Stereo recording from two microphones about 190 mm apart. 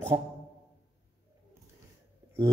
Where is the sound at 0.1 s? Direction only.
20° right (ahead or behind).